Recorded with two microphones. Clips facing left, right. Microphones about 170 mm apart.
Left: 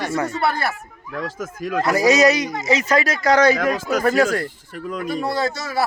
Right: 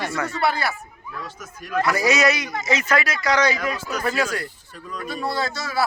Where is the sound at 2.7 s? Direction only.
40° left (ahead or behind).